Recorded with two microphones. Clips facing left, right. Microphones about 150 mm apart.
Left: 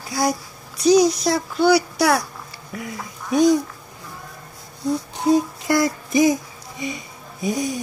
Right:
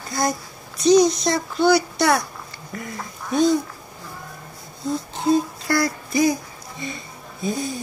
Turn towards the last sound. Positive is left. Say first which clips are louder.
# left 2 dB
turn(degrees=15)  # may be behind; listen again after turning